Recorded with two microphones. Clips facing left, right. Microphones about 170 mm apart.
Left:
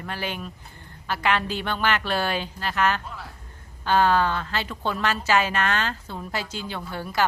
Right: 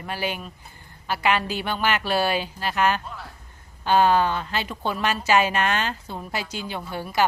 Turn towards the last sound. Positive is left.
turn(degrees=-15)  # may be behind; listen again after turning